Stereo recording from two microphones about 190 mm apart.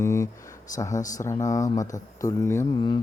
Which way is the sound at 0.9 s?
40° left (ahead or behind).